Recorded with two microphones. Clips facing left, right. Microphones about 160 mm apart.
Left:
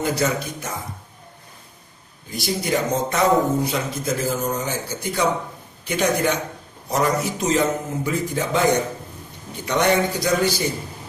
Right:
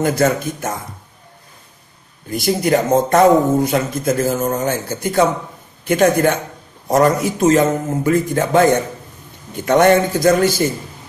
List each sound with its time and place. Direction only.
0.0 s a man's voice: 50° right (ahead or behind)
2.2 s a man's voice: 50° right (ahead or behind)